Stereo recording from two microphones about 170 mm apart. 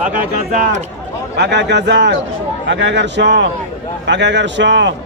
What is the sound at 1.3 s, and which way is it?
A man's voice, 80° right.